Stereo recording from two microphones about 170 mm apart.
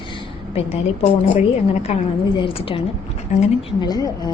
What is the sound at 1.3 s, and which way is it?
Speech, 45° left (ahead or behind).